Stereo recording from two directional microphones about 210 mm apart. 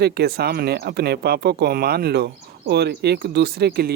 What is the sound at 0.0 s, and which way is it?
Speech, 50° right (ahead or behind).